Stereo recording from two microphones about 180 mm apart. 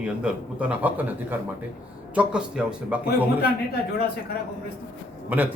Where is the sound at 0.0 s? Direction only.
5° right (ahead or behind).